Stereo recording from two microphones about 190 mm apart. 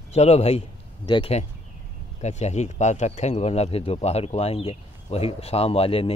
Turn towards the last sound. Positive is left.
turn(degrees=30)  # may be behind; listen again after turning